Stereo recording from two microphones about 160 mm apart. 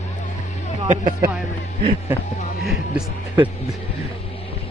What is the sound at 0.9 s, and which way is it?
Speech, 60° right (ahead or behind).